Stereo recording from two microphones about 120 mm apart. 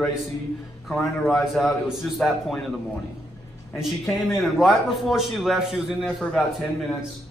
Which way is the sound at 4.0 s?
5° right (ahead or behind).